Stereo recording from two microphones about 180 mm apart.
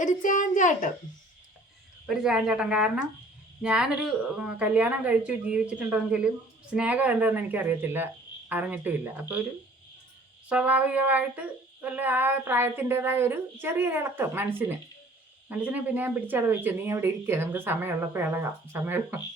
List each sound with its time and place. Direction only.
0.0 s a child's voice: 45° left (ahead or behind)
2.0 s speech: 5° right (ahead or behind)
6.7 s child singing: 5° right (ahead or behind)
10.5 s child singing: 5° right (ahead or behind)